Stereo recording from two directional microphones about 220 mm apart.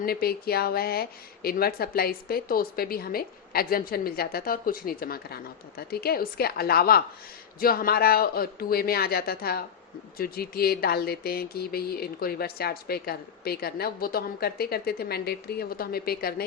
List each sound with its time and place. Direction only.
0.0 s speech: 45° left (ahead or behind)